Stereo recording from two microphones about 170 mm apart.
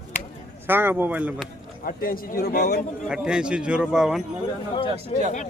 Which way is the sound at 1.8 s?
60° left (ahead or behind).